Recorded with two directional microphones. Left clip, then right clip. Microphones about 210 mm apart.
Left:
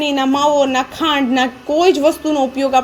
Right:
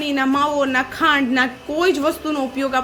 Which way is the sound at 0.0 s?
Centre (ahead or behind).